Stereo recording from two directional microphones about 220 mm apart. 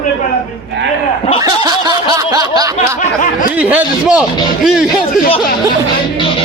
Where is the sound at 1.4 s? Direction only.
15° right (ahead or behind).